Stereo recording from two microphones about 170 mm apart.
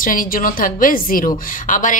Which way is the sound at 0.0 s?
55° left (ahead or behind).